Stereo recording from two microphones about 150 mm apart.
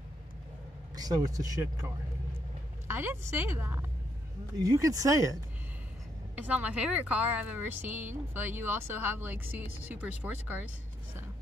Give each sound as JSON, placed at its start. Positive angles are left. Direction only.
{"t": 0.9, "sound": "speech", "side_deg": -25}
{"t": 2.9, "sound": "a woman's voice", "side_deg": -15}
{"t": 6.3, "sound": "a woman's voice", "side_deg": -10}